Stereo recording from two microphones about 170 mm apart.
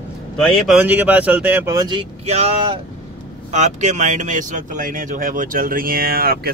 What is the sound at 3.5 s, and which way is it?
Speech, 45° right (ahead or behind).